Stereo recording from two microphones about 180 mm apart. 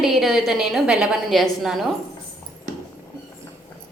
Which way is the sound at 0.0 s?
Centre (ahead or behind).